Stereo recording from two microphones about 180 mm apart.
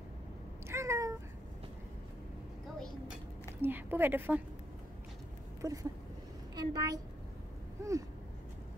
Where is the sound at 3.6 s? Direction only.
10° right (ahead or behind).